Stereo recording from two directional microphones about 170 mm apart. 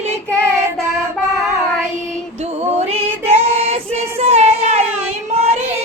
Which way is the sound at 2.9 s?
35° right (ahead or behind).